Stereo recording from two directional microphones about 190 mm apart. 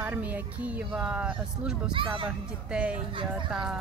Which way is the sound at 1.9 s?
25° right (ahead or behind).